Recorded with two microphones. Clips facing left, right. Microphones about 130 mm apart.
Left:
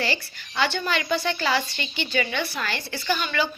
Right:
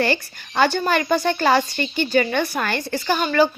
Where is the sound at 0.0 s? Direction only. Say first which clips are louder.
Right 7 dB; 50° right (ahead or behind).